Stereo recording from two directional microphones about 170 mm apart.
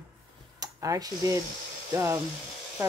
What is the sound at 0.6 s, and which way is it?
Speech, 20° right (ahead or behind).